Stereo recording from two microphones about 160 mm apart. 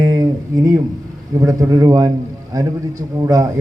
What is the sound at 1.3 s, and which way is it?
A man's voice, 20° right (ahead or behind).